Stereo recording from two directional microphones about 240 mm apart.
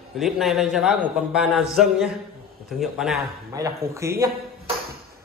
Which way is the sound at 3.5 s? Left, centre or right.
Centre.